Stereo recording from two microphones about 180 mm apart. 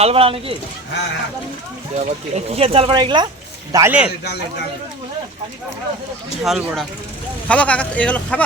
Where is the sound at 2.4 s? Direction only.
35° right (ahead or behind).